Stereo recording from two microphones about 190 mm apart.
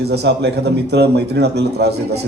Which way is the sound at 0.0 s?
60° right (ahead or behind).